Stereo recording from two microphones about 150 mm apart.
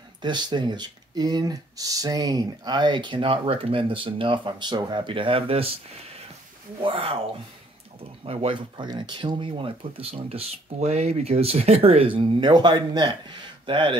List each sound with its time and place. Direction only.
0.2 s speech: 30° right (ahead or behind)
6.8 s speech: 40° right (ahead or behind)
8.3 s speech: 40° right (ahead or behind)